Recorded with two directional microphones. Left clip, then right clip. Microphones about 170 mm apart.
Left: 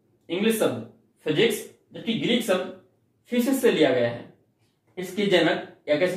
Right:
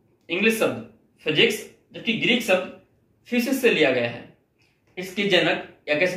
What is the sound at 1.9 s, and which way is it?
Speech, 15° left (ahead or behind).